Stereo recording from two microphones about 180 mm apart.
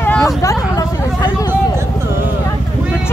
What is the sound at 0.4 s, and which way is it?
Vehicle, 20° left (ahead or behind).